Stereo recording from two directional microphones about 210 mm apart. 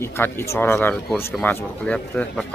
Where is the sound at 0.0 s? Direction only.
10° left (ahead or behind).